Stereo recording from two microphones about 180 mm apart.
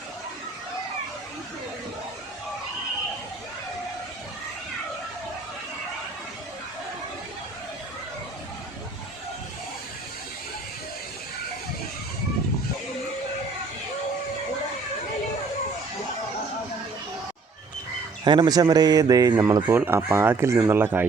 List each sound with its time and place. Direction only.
18.3 s speech: 25° right (ahead or behind)